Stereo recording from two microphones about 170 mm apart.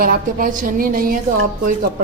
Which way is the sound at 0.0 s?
55° right (ahead or behind).